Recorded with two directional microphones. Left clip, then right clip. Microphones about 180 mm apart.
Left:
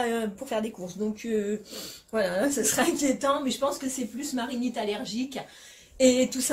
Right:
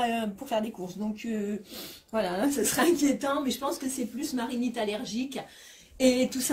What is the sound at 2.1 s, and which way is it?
A woman's voice, 15° left (ahead or behind).